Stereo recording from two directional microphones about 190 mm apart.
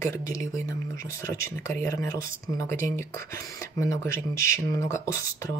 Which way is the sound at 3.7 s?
15° left (ahead or behind).